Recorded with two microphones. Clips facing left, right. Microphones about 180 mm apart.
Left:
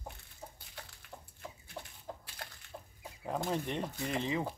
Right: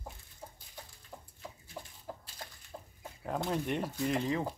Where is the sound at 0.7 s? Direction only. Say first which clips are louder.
Right 1 dB; 65° left (ahead or behind).